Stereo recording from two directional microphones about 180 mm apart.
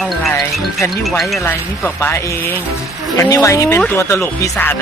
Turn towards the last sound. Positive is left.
turn(degrees=15)  # may be behind; listen again after turning